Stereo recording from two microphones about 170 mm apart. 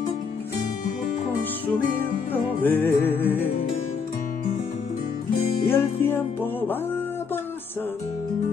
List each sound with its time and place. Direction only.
2.6 s music: 10° left (ahead or behind)
5.3 s music: 60° left (ahead or behind)
5.7 s music: 10° left (ahead or behind)